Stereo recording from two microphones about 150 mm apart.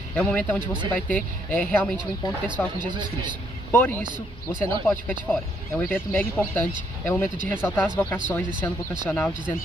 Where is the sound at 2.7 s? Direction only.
30° right (ahead or behind).